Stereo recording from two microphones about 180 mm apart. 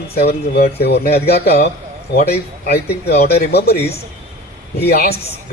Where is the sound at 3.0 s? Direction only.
60° left (ahead or behind).